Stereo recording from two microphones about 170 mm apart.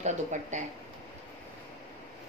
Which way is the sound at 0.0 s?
45° right (ahead or behind).